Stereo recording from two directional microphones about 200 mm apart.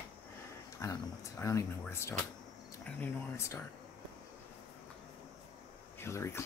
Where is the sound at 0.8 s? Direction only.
15° left (ahead or behind).